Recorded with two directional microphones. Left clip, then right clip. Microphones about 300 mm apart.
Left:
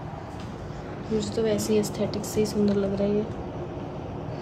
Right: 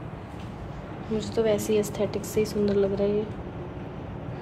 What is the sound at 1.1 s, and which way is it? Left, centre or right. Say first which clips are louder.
A woman's voice: right 1 dB; centre.